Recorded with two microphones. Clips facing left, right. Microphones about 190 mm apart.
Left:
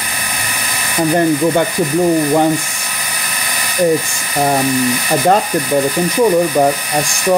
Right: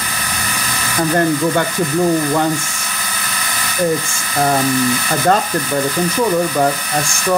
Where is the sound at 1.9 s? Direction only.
20° left (ahead or behind).